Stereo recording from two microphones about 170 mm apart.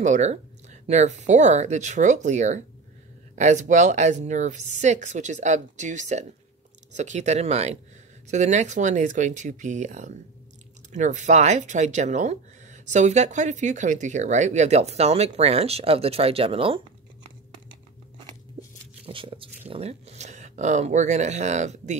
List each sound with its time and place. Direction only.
0.0 s speech: 45° right (ahead or behind)
19.0 s a sound: 30° right (ahead or behind)
19.7 s speech: 40° right (ahead or behind)